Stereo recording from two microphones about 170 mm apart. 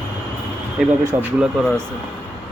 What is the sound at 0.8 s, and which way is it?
Speech, 5° right (ahead or behind).